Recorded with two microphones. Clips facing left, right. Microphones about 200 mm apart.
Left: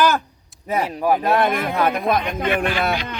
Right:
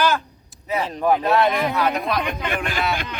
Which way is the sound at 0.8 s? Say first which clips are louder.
Right 1 dB; 10° left (ahead or behind).